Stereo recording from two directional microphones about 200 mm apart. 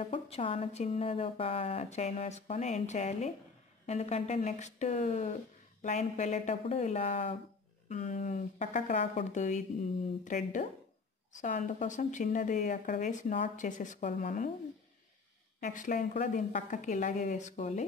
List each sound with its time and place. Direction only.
0.0 s speech: 30° left (ahead or behind)
15.6 s speech: 40° left (ahead or behind)